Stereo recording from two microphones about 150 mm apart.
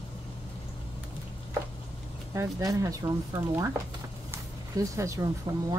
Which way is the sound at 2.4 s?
20° right (ahead or behind).